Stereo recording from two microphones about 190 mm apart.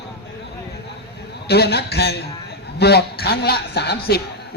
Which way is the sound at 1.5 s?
60° left (ahead or behind).